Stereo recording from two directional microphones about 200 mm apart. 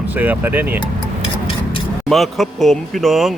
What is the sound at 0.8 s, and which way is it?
Music, 25° left (ahead or behind).